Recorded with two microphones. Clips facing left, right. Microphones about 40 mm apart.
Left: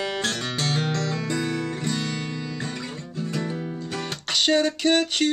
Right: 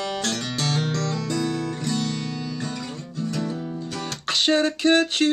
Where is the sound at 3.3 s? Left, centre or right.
Left.